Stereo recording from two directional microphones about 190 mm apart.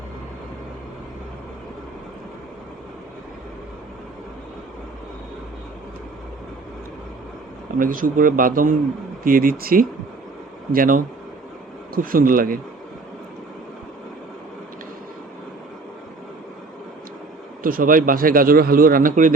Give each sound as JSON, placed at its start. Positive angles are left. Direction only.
{"t": 7.8, "sound": "speech", "side_deg": -45}
{"t": 17.6, "sound": "speech", "side_deg": -45}